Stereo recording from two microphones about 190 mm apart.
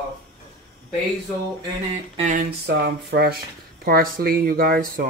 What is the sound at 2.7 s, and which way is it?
Speech, 55° right (ahead or behind).